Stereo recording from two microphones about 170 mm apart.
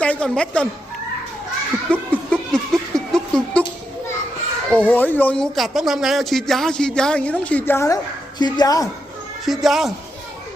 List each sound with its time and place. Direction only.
0.0 s a woman's voice: 5° left (ahead or behind)
1.9 s a sound: 5° left (ahead or behind)
4.7 s a woman's voice: 10° left (ahead or behind)
9.5 s speech: centre (ahead or behind)